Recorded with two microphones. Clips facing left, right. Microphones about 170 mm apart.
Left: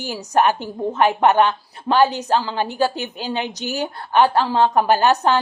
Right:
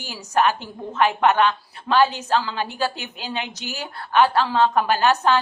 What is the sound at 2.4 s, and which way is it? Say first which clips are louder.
A woman's voice: left 5 dB; 40° left (ahead or behind).